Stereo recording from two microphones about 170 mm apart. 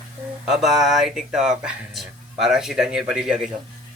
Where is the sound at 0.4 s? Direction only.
Centre (ahead or behind).